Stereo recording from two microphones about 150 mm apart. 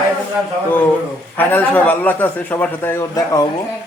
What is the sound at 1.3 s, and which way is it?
A man's voice, 10° left (ahead or behind).